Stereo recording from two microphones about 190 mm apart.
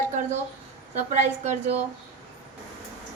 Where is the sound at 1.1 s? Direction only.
40° right (ahead or behind).